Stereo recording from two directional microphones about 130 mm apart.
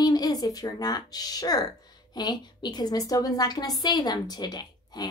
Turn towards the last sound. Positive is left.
turn(degrees=35)  # may be behind; listen again after turning